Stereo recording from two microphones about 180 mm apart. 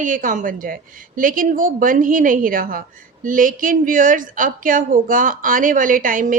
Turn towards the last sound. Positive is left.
turn(degrees=-50)  # may be behind; listen again after turning